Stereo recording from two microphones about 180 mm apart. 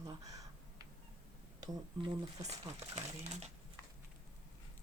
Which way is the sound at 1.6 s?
20° right (ahead or behind).